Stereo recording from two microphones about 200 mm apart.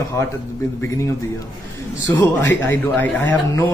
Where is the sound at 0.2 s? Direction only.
15° left (ahead or behind).